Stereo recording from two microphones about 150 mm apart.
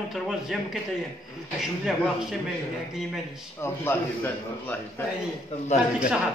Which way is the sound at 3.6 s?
15° left (ahead or behind).